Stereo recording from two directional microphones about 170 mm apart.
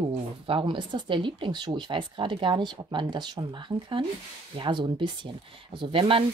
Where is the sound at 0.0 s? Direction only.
30° right (ahead or behind).